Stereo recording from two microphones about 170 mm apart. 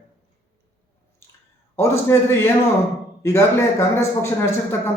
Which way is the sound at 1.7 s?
15° left (ahead or behind).